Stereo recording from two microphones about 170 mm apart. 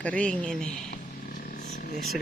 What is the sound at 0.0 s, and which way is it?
Speech, 5° left (ahead or behind).